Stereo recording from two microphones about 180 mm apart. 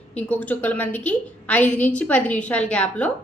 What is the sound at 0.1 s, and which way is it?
A woman's voice, 10° left (ahead or behind).